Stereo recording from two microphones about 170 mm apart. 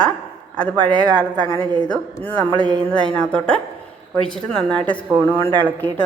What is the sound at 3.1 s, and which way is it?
A woman's voice, 5° left (ahead or behind).